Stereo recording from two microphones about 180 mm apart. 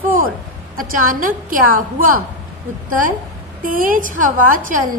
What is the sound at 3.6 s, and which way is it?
A woman's voice, 50° right (ahead or behind).